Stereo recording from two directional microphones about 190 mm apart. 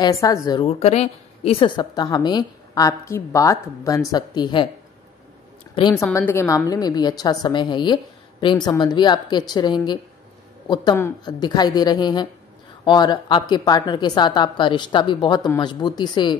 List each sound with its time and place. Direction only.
0.0 s a woman's voice: 15° left (ahead or behind)
5.8 s a woman's voice: 20° left (ahead or behind)